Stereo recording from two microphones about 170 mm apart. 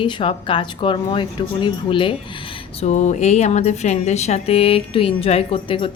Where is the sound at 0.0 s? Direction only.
30° left (ahead or behind).